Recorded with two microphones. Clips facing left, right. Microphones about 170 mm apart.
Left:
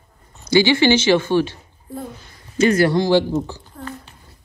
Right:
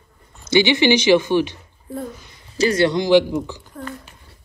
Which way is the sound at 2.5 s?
35° right (ahead or behind).